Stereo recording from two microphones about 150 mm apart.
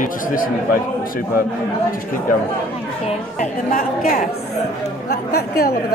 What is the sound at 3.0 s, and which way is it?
Speech, 60° left (ahead or behind).